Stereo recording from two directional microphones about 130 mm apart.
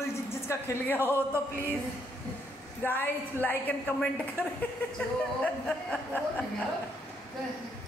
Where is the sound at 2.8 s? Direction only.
15° left (ahead or behind).